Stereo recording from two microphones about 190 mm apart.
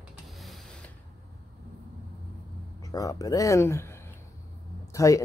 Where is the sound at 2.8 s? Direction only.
15° left (ahead or behind).